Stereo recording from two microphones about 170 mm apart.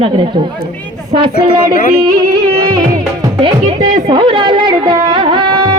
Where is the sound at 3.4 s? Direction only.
25° right (ahead or behind).